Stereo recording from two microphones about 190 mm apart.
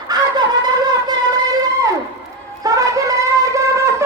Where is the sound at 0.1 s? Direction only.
20° right (ahead or behind).